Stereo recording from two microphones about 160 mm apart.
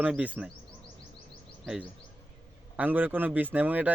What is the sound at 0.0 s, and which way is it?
Speech, 10° right (ahead or behind).